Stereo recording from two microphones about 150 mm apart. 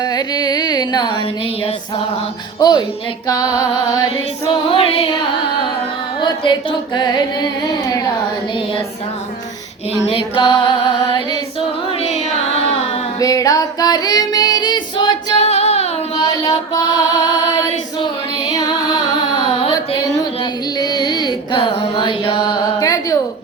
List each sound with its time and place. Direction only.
0.0 s carnatic music: 25° left (ahead or behind)
2.6 s music: 30° left (ahead or behind)
4.4 s music: 40° left (ahead or behind)
6.2 s music: 35° left (ahead or behind)
10.1 s music: 35° left (ahead or behind)
13.1 s female singing: 25° left (ahead or behind)
15.4 s music: 45° left (ahead or behind)
16.1 s music: 25° left (ahead or behind)
19.5 s a sound: 35° left (ahead or behind)
20.4 s music: 25° left (ahead or behind)